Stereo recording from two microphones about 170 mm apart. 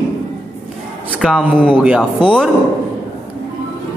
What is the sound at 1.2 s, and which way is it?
A man's voice, 5° right (ahead or behind).